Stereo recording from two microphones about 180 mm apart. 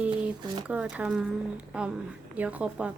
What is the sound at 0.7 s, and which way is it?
A woman's voice, 5° right (ahead or behind).